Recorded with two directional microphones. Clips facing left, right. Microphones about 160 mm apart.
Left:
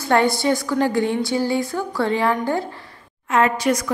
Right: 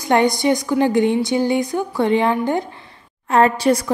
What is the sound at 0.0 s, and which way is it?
Speech, 15° right (ahead or behind).